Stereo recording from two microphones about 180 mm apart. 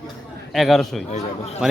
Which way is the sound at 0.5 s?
Centre (ahead or behind).